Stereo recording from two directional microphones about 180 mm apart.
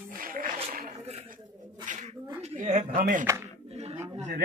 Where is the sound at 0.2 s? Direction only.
50° right (ahead or behind).